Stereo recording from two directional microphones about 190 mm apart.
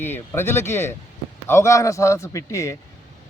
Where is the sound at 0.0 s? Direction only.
10° left (ahead or behind).